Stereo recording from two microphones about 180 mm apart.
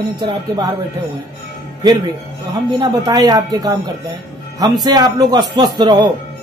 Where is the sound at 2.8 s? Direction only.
20° right (ahead or behind).